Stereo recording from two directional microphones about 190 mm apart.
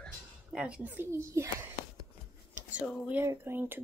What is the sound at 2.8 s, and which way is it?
Speech, 5° right (ahead or behind).